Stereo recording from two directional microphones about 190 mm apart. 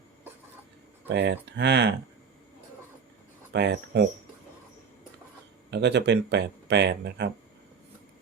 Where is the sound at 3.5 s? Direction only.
60° right (ahead or behind).